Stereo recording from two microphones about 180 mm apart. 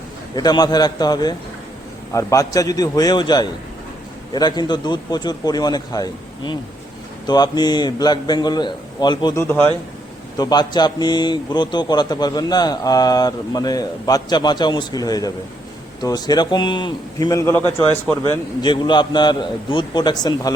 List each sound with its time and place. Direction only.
0.3 s a man's voice: 20° left (ahead or behind)
10.3 s a man's voice: 20° left (ahead or behind)
18.6 s a man's voice: 25° left (ahead or behind)